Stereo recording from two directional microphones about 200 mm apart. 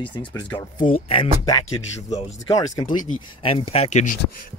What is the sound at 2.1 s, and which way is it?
Speech, 35° left (ahead or behind).